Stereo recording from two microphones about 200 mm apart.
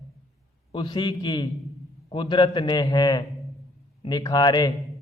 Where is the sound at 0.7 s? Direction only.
25° left (ahead or behind).